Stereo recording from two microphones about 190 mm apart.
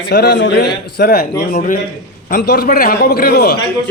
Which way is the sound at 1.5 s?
45° left (ahead or behind).